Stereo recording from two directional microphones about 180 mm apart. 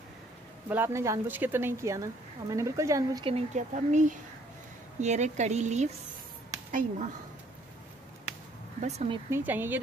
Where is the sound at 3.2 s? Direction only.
40° right (ahead or behind).